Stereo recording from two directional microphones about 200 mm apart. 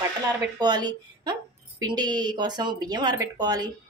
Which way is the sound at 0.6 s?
20° right (ahead or behind).